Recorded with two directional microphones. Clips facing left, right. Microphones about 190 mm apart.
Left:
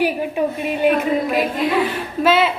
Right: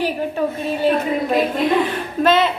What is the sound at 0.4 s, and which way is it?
Speech, 15° left (ahead or behind).